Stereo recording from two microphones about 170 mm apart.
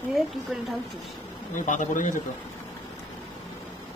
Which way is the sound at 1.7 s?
50° left (ahead or behind).